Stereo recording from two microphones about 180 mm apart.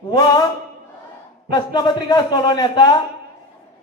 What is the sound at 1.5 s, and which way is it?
A man's voice, 20° left (ahead or behind).